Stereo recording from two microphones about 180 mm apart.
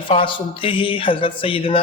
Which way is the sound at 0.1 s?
30° left (ahead or behind).